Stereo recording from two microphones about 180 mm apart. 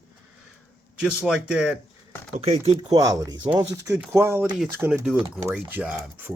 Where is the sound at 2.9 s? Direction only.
20° right (ahead or behind).